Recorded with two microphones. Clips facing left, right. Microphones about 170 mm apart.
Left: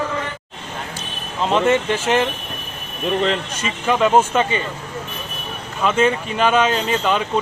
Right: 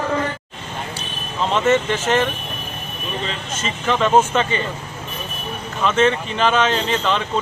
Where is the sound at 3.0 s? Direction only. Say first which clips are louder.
Left 9 dB; 70° left (ahead or behind).